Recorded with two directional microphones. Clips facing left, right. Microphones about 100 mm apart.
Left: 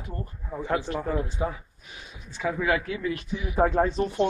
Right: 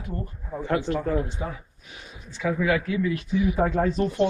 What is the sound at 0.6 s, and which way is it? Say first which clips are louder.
Speech: right 3 dB; 15° left (ahead or behind).